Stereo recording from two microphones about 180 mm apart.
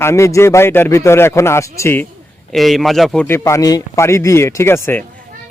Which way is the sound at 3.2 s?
15° left (ahead or behind).